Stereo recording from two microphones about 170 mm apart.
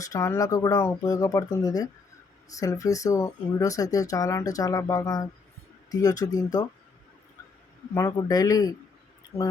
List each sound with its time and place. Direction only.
0.0 s speech: 20° left (ahead or behind)
7.9 s speech: 20° left (ahead or behind)